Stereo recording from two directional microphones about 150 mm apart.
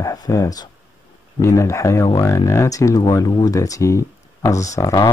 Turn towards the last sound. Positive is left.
turn(degrees=25)  # may be behind; listen again after turning